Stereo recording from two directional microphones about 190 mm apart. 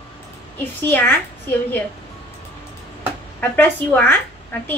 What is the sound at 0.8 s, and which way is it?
Speech, 10° left (ahead or behind).